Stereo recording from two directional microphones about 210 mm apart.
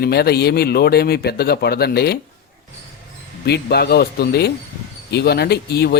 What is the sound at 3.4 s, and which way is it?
A man's voice, 50° left (ahead or behind).